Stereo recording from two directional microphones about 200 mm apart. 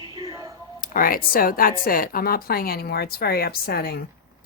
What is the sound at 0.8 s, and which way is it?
Speech, 45° left (ahead or behind).